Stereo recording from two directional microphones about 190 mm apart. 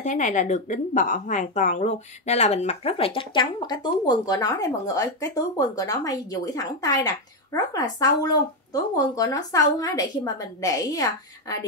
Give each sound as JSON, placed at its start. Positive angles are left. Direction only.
{"t": 0.0, "sound": "speech", "side_deg": 40}